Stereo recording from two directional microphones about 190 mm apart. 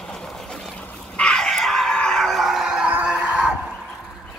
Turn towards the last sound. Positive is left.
turn(degrees=-5)  # may be behind; listen again after turning